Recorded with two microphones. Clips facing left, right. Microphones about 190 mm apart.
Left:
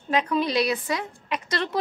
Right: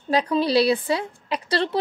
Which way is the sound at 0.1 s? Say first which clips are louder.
Right 4 dB; 35° right (ahead or behind).